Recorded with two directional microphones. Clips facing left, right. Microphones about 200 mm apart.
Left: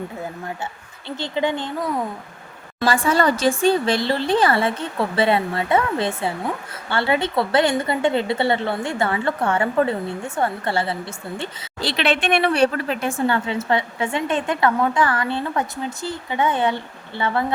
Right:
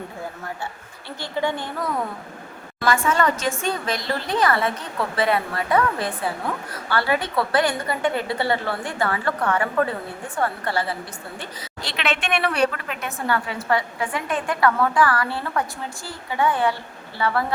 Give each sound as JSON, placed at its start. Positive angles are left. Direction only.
{"t": 1.2, "sound": "a woman's voice", "side_deg": 20}
{"t": 2.8, "sound": "a woman's voice", "side_deg": 30}